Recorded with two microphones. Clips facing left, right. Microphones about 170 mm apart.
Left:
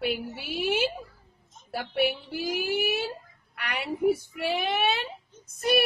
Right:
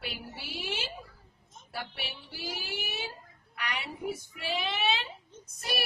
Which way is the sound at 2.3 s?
50° left (ahead or behind).